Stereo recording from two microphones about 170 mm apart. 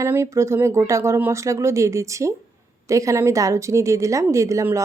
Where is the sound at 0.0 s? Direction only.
15° right (ahead or behind).